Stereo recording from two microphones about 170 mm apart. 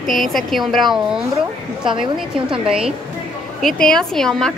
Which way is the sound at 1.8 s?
30° right (ahead or behind).